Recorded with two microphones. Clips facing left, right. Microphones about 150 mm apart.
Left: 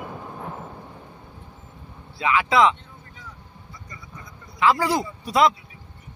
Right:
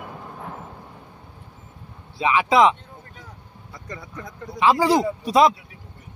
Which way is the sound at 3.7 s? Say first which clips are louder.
Right 8 dB; 70° right (ahead or behind).